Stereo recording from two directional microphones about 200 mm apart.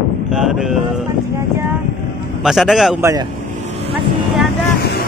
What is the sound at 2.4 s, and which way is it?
Speech, centre (ahead or behind).